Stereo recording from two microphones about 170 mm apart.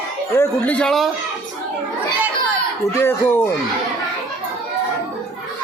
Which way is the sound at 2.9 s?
15° left (ahead or behind).